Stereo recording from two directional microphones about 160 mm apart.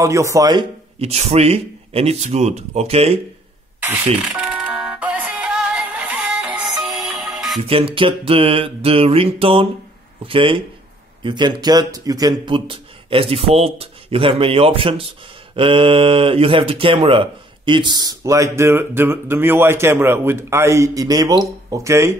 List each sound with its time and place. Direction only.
0.0 s speech: 20° right (ahead or behind)
0.9 s speech: 40° right (ahead or behind)
4.2 s music: 5° right (ahead or behind)
7.6 s speech: 35° right (ahead or behind); by 22.1 s 20° right (ahead or behind)